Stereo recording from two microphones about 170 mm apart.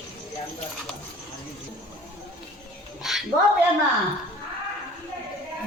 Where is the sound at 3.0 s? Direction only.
Centre (ahead or behind).